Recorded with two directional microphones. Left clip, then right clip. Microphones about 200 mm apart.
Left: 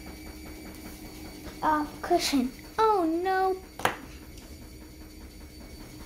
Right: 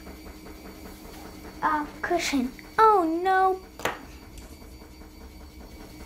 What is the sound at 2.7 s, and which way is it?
Child singing, 5° right (ahead or behind).